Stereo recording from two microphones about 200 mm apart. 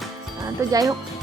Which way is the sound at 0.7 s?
15° right (ahead or behind).